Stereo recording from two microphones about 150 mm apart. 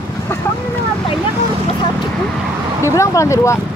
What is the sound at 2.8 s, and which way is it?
Speech, 20° left (ahead or behind).